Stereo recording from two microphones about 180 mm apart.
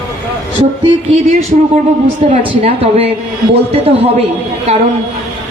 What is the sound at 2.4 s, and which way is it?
A man's voice, 30° right (ahead or behind).